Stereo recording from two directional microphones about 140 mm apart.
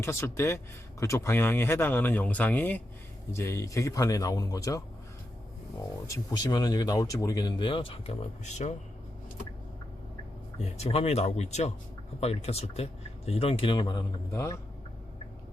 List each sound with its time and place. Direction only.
0.0 s speech: 20° left (ahead or behind)
6.1 s speech: 30° left (ahead or behind); by 8.7 s 50° left (ahead or behind)
10.6 s speech: 45° left (ahead or behind); by 14.6 s 20° left (ahead or behind)